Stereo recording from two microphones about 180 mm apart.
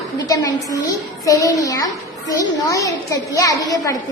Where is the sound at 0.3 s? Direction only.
20° left (ahead or behind).